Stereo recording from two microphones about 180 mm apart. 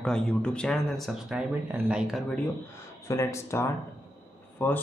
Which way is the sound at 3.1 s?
15° left (ahead or behind).